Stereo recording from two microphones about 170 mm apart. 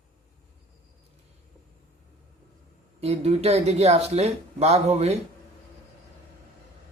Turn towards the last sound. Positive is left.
turn(degrees=-40)  # may be behind; listen again after turning